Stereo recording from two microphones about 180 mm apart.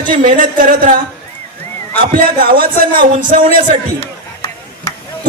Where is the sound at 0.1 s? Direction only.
50° right (ahead or behind).